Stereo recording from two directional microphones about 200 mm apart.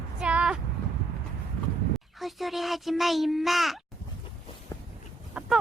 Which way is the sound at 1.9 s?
Centre (ahead or behind).